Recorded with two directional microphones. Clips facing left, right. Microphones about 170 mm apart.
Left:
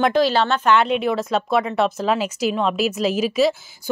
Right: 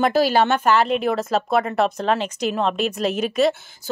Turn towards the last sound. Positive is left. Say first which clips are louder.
# left 1 dB
turn(degrees=0)  # may be behind; listen again after turning